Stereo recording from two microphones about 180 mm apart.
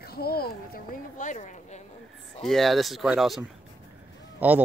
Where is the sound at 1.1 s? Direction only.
45° left (ahead or behind).